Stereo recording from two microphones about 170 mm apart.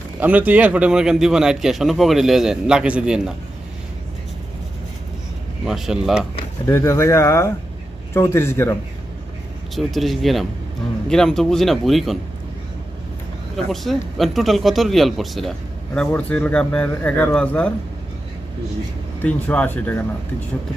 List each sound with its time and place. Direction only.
0.2 s a man's voice: 10° right (ahead or behind)
5.6 s a man's voice: 5° right (ahead or behind)
6.7 s speech: 15° left (ahead or behind)
9.7 s a man's voice: centre (ahead or behind)
13.7 s a man's voice: centre (ahead or behind)
19.2 s speech: 10° left (ahead or behind)